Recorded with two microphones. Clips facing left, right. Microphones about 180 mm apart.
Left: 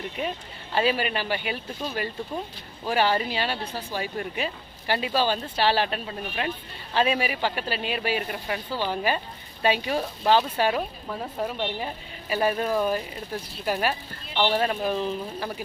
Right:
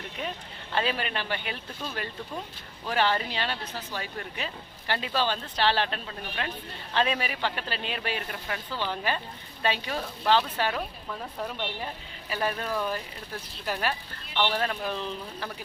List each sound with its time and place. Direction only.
0.7 s speech: 10° left (ahead or behind)
10.8 s speech: 25° left (ahead or behind)
12.3 s speech: 15° left (ahead or behind)